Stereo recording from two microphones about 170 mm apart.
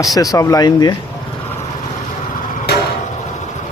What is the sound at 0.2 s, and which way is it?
Speech, 20° left (ahead or behind).